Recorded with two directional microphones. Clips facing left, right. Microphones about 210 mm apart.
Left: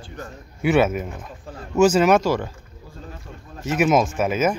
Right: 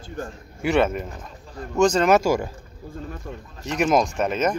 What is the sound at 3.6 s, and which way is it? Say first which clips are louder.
Speech: left 2 dB; 5° left (ahead or behind).